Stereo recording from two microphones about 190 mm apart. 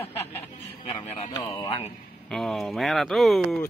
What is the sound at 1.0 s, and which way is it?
Speech, 35° left (ahead or behind).